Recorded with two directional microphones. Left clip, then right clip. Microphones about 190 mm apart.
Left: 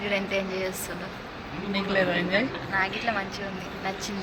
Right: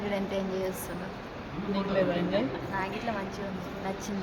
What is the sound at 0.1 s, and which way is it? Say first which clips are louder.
Speech: left 5 dB; 25° right (ahead or behind).